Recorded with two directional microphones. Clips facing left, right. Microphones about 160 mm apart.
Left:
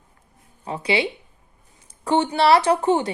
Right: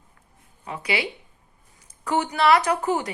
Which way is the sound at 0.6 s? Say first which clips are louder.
Left 5 dB; 30° left (ahead or behind).